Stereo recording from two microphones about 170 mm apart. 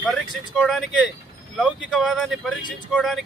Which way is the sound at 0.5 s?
Centre (ahead or behind).